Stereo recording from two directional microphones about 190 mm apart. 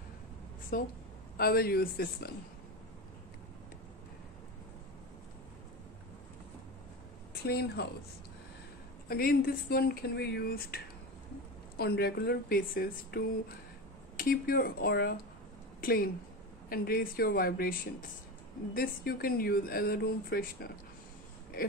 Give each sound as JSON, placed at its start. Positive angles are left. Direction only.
{"t": 0.7, "sound": "speech", "side_deg": 50}
{"t": 7.4, "sound": "speech", "side_deg": 60}
{"t": 9.1, "sound": "speech", "side_deg": 50}